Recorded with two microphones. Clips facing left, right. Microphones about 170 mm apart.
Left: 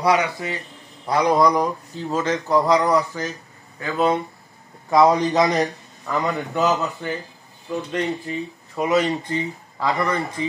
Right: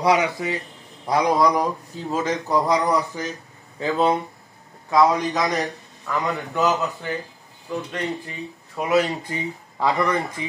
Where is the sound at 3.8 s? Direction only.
25° right (ahead or behind).